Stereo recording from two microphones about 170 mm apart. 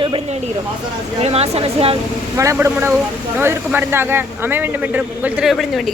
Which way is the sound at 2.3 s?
15° right (ahead or behind).